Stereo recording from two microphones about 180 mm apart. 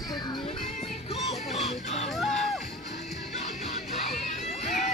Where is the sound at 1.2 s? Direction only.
40° left (ahead or behind).